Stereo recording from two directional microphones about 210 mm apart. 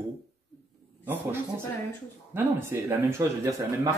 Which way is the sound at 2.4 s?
10° right (ahead or behind).